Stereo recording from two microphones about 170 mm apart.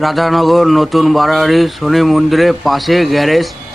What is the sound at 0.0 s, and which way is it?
Speech, centre (ahead or behind).